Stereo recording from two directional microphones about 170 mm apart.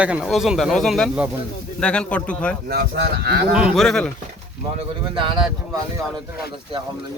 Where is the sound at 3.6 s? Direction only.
Centre (ahead or behind).